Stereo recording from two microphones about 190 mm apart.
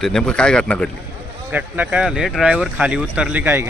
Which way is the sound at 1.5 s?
10° right (ahead or behind).